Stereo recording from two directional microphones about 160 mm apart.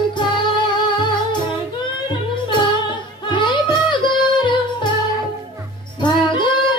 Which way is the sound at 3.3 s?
30° left (ahead or behind).